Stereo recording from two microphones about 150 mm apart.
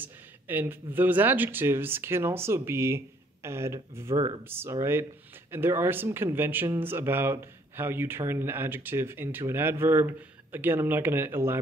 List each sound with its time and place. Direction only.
0.0 s speech: 15° right (ahead or behind)